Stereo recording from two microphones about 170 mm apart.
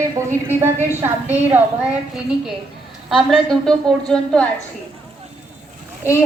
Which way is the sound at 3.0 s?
Centre (ahead or behind).